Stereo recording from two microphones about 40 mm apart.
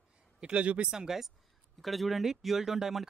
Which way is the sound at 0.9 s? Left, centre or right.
Centre.